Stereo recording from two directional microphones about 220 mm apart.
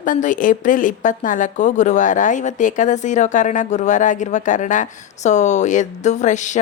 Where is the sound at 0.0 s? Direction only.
35° left (ahead or behind).